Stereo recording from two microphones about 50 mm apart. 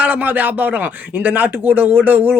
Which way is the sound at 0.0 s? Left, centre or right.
Right.